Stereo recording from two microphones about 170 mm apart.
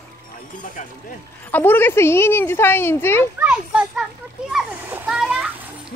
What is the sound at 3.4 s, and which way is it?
Speech, 5° right (ahead or behind).